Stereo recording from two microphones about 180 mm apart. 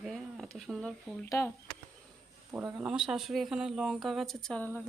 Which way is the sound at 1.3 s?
15° left (ahead or behind).